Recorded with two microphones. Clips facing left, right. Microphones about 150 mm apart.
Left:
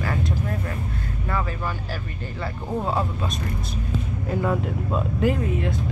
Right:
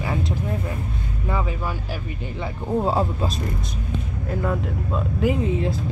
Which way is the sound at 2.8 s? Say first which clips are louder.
Right 2 dB; 30° right (ahead or behind).